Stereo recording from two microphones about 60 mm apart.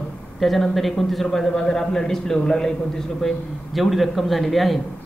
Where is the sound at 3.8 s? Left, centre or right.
Centre.